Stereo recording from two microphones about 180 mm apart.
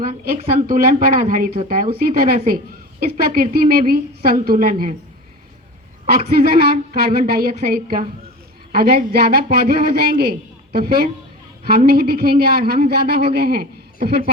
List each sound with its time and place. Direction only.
0.7 s a man's voice: 50° right (ahead or behind)
6.1 s a man's voice: 55° right (ahead or behind)